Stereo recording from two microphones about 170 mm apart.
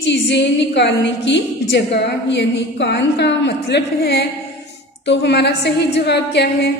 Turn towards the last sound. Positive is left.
turn(degrees=80)